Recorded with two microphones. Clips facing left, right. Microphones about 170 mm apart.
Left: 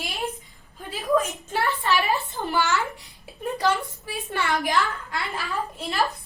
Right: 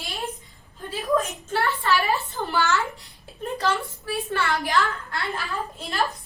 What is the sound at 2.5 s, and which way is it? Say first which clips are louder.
A woman's voice: even; 15° left (ahead or behind).